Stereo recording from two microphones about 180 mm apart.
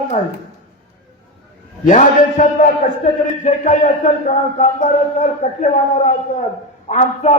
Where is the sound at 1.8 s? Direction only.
45° left (ahead or behind).